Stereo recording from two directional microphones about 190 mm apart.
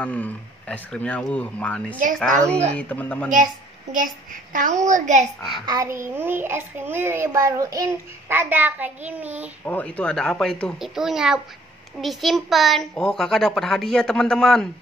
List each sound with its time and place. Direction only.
0.0 s speech: 5° left (ahead or behind)
3.3 s a child's voice: 45° right (ahead or behind)
5.7 s a child's voice: 15° right (ahead or behind)
9.7 s a child's voice: 5° left (ahead or behind)